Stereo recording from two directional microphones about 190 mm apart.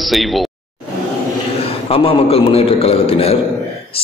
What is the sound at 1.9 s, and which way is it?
A man's voice, 30° left (ahead or behind).